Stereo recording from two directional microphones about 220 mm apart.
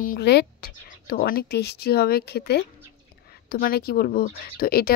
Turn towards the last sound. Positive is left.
turn(degrees=45)  # may be behind; listen again after turning